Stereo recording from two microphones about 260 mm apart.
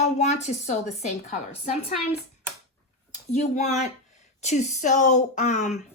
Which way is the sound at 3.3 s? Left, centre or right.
Left.